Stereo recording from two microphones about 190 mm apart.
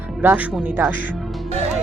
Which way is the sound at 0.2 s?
10° right (ahead or behind).